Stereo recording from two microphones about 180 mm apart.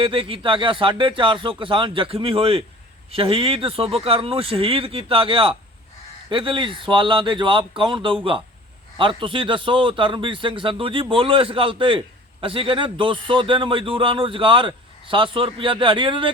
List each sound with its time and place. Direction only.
0.0 s a man's voice: 30° right (ahead or behind)